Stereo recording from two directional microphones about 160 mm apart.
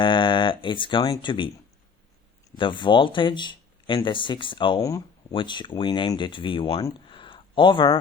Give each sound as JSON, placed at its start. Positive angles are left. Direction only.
{"t": 0.0, "sound": "speech", "side_deg": 30}
{"t": 2.6, "sound": "speech", "side_deg": 30}